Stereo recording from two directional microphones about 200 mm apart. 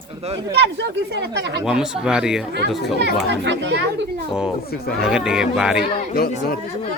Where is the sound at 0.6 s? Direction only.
60° right (ahead or behind).